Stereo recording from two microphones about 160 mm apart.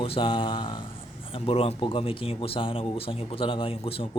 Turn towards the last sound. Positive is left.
turn(degrees=35)  # may be behind; listen again after turning